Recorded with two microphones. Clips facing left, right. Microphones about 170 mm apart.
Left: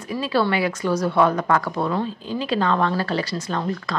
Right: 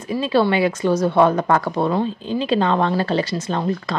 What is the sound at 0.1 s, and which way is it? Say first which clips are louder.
Speech: right 4 dB; 25° right (ahead or behind).